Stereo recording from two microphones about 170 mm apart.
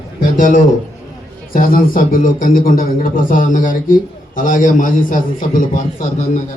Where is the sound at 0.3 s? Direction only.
50° left (ahead or behind).